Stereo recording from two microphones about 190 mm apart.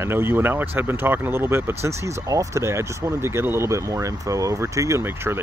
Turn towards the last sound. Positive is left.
turn(degrees=-10)  # may be behind; listen again after turning